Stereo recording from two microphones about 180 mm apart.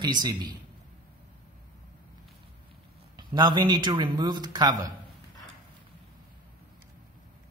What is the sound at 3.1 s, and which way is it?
A man's voice, 25° right (ahead or behind).